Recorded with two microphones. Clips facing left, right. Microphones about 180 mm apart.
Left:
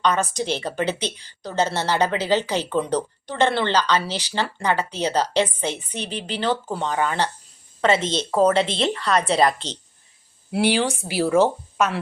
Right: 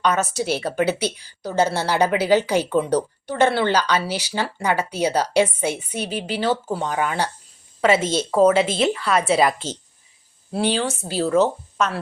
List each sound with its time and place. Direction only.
0.0 s a woman's voice: 10° right (ahead or behind)
10.6 s speech: 10° left (ahead or behind)